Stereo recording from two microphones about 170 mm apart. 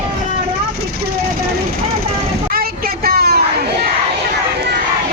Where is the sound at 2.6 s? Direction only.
60° right (ahead or behind).